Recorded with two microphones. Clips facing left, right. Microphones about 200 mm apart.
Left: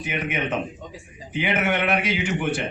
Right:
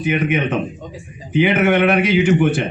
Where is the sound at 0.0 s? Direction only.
75° right (ahead or behind).